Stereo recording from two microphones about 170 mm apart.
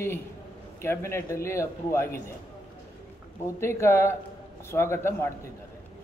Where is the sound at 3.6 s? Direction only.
15° left (ahead or behind).